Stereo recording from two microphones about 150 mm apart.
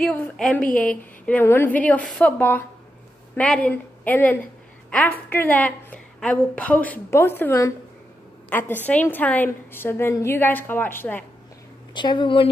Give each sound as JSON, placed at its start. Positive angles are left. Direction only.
{"t": 0.0, "sound": "a woman's voice", "side_deg": 5}
{"t": 11.9, "sound": "speech", "side_deg": 30}